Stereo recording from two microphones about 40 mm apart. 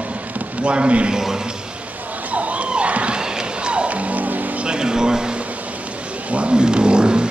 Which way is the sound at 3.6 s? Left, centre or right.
Right.